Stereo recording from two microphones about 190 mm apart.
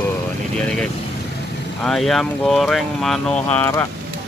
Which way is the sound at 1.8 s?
5° left (ahead or behind).